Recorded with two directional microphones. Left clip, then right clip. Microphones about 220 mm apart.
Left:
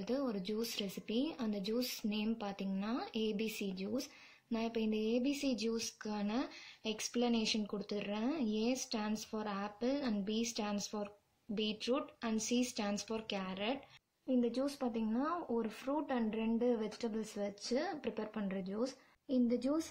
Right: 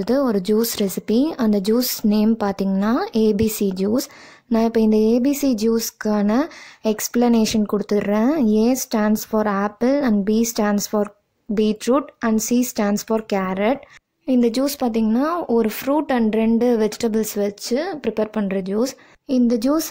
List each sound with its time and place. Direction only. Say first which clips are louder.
0.0 s speech: right 19 dB; 45° right (ahead or behind)